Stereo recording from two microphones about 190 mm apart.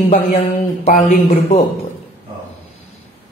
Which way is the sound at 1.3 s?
35° left (ahead or behind).